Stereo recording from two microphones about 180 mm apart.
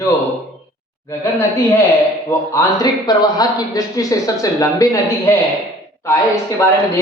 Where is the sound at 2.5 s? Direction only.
20° left (ahead or behind).